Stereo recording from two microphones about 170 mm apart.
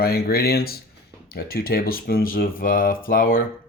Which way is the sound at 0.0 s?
65° left (ahead or behind).